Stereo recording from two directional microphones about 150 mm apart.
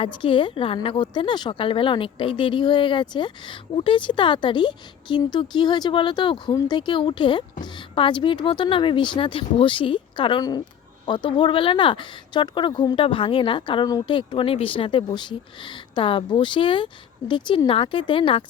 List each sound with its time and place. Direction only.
0.0 s speech: 35° left (ahead or behind)